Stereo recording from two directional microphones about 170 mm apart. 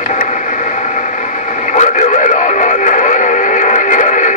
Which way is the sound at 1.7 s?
45° left (ahead or behind).